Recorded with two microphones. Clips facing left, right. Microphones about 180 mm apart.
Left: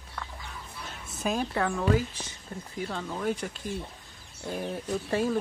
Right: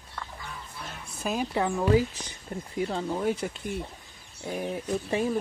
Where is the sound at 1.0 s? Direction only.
Centre (ahead or behind); by 3.7 s 25° right (ahead or behind).